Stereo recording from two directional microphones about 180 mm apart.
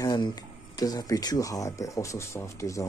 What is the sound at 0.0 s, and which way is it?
Speech, 20° left (ahead or behind).